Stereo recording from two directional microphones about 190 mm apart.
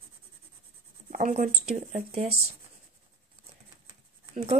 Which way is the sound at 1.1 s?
40° right (ahead or behind).